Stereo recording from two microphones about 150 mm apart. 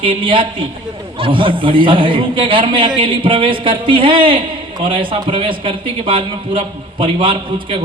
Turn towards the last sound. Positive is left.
turn(degrees=-35)  # may be behind; listen again after turning